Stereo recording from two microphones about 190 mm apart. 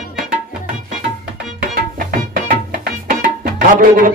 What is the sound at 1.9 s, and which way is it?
Music, 50° right (ahead or behind).